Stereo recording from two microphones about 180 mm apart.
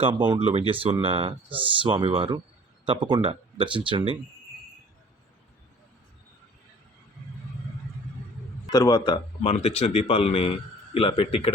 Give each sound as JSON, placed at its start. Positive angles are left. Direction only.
{"t": 0.0, "sound": "speech", "side_deg": -25}
{"t": 8.7, "sound": "a man's voice", "side_deg": 20}